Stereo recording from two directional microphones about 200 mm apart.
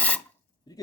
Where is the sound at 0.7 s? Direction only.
20° left (ahead or behind).